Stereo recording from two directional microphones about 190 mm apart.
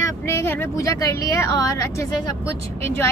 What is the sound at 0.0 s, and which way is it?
Speech, 15° left (ahead or behind).